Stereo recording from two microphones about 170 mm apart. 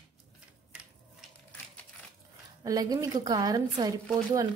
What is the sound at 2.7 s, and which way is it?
A woman's voice, 20° right (ahead or behind).